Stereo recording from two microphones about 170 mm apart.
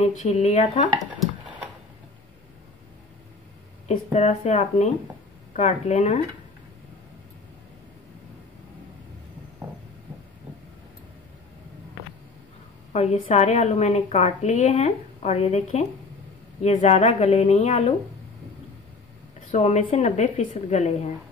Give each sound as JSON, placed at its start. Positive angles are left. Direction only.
{"t": 0.0, "sound": "a woman's voice", "side_deg": 40}
{"t": 3.8, "sound": "a woman's voice", "side_deg": 40}
{"t": 12.9, "sound": "a woman's voice", "side_deg": 40}
{"t": 19.5, "sound": "a woman's voice", "side_deg": 40}